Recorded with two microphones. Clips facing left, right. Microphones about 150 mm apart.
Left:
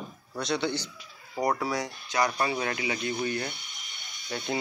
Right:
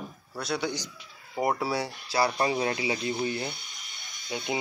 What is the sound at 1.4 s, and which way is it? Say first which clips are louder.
A man's voice: even; 25° right (ahead or behind).